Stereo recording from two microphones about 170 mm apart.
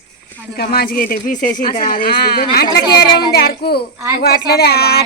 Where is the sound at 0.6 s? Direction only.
60° left (ahead or behind).